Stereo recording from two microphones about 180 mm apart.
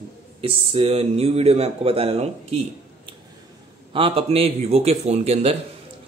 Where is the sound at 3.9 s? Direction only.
30° right (ahead or behind).